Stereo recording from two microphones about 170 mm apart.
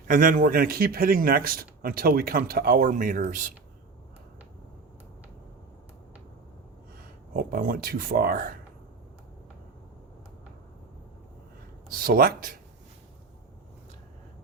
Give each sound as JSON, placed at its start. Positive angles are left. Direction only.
{"t": 0.1, "sound": "a man's voice", "side_deg": -50}
{"t": 7.3, "sound": "a man's voice", "side_deg": -60}
{"t": 11.9, "sound": "a man's voice", "side_deg": -60}